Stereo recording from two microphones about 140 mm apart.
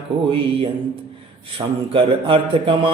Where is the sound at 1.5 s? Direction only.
40° right (ahead or behind).